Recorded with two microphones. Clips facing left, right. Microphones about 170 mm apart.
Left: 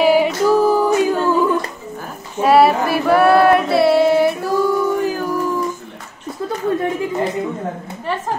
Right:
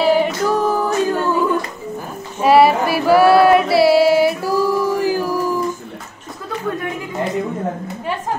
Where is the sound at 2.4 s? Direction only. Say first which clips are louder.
Even; centre (ahead or behind).